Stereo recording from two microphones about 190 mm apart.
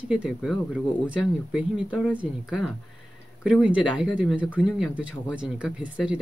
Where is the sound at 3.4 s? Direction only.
5° right (ahead or behind).